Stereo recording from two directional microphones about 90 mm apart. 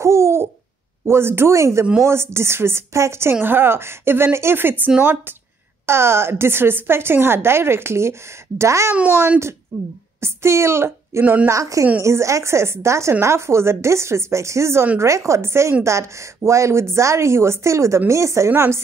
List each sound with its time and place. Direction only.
0.0 s hoot: 30° right (ahead or behind)
1.0 s a woman's voice: 25° right (ahead or behind)
8.9 s a woman's voice: 20° right (ahead or behind)
10.2 s a sound: 30° right (ahead or behind)
11.4 s a woman's voice: 35° right (ahead or behind)